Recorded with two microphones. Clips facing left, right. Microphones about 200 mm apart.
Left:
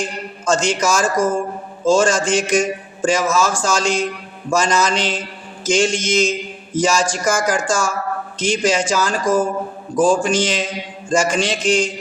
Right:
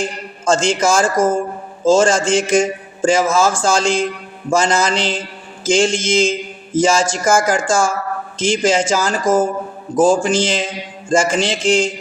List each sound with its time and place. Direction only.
0.0 s a man's voice: 25° right (ahead or behind)